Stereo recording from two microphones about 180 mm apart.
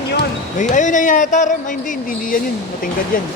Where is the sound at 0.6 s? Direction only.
45° left (ahead or behind).